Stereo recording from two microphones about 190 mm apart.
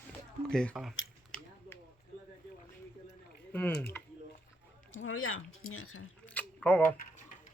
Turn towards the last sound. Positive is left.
turn(degrees=10)  # may be behind; listen again after turning